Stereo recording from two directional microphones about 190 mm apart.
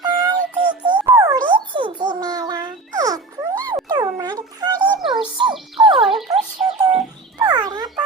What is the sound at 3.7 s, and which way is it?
Music, 20° right (ahead or behind).